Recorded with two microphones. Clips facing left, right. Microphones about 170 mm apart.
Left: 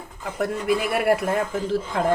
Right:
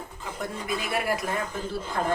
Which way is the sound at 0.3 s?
65° left (ahead or behind).